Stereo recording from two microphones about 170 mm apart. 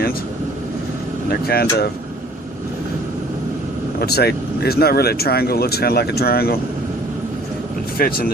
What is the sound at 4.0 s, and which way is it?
Speech, 70° left (ahead or behind).